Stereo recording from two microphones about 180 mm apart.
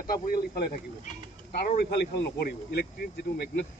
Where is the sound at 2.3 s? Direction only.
60° left (ahead or behind).